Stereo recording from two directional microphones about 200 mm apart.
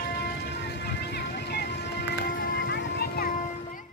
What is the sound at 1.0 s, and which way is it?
Music, 55° left (ahead or behind).